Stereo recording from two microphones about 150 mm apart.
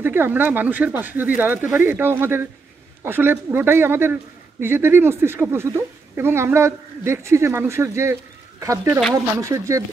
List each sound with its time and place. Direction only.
0.0 s speech: 15° right (ahead or behind)